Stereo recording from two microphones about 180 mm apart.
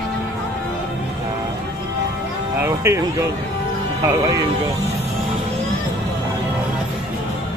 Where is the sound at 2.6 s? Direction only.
15° right (ahead or behind).